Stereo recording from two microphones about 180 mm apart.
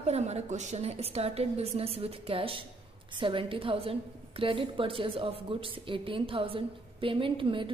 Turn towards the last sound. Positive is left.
turn(degrees=-30)  # may be behind; listen again after turning